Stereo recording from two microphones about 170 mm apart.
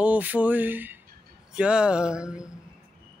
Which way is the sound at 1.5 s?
5° right (ahead or behind).